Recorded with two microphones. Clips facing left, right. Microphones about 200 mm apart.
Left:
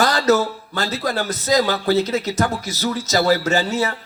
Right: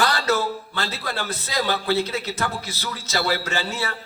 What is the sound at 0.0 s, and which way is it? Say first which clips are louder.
A man's voice: left 5 dB; 40° left (ahead or behind).